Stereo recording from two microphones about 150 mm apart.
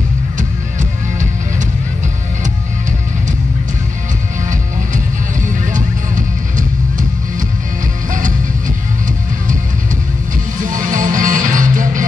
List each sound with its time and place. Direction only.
0.4 s music: 55° right (ahead or behind)
5.5 s music: 60° right (ahead or behind)
8.1 s music: 60° right (ahead or behind)
10.6 s music: 60° right (ahead or behind)